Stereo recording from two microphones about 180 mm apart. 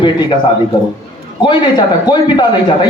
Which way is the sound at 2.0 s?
25° left (ahead or behind).